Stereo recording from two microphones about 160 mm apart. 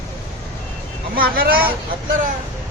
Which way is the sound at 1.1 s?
65° right (ahead or behind).